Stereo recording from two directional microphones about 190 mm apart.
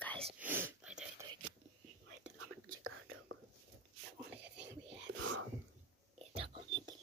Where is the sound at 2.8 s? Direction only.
90° right.